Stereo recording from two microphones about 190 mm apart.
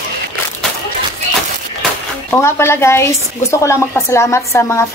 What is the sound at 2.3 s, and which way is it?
Speech, 15° left (ahead or behind).